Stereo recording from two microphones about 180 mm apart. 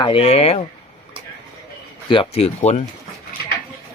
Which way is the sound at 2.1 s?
30° left (ahead or behind).